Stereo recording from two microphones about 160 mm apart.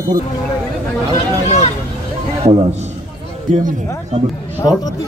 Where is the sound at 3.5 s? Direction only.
55° right (ahead or behind).